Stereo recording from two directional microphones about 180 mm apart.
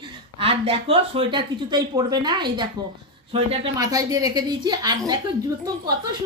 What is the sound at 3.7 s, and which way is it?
A woman's voice, 20° right (ahead or behind).